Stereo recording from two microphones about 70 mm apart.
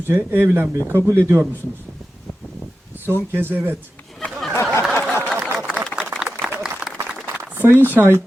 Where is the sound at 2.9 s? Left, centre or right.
Right.